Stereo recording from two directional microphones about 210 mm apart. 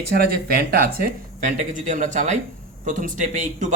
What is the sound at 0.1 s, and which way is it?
Speech, 45° right (ahead or behind).